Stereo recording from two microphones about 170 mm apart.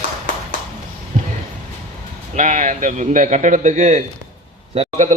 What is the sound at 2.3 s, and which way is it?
A man's voice, 45° right (ahead or behind).